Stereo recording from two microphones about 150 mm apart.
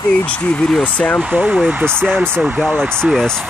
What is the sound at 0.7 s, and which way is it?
Speech, 10° left (ahead or behind).